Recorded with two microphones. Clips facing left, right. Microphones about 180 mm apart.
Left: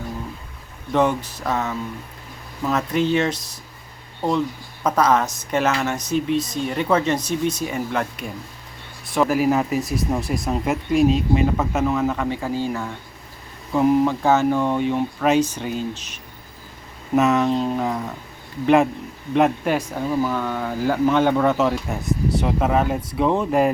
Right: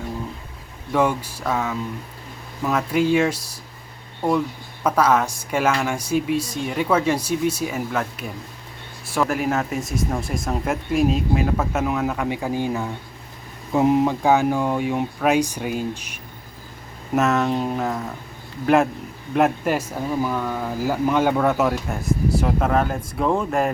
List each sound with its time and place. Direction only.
0.9 s speech: 10° right (ahead or behind)
4.9 s speech: 5° right (ahead or behind)
9.8 s speech: 50° right (ahead or behind)
10.1 s speech: 5° left (ahead or behind)
17.2 s speech: centre (ahead or behind)